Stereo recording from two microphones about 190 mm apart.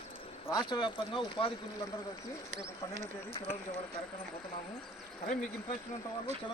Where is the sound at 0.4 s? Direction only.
20° left (ahead or behind).